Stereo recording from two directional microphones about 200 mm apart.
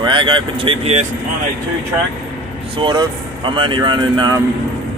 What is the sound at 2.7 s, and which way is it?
Speech, 25° right (ahead or behind).